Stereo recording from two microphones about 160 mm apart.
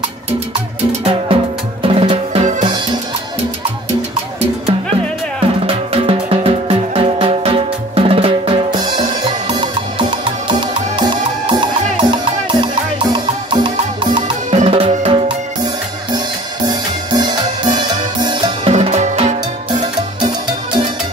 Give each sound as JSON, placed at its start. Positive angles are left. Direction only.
{"t": 1.0, "sound": "music", "side_deg": -35}
{"t": 5.9, "sound": "music", "side_deg": -35}
{"t": 14.5, "sound": "music", "side_deg": -40}
{"t": 18.7, "sound": "music", "side_deg": -45}
{"t": 19.7, "sound": "music", "side_deg": -30}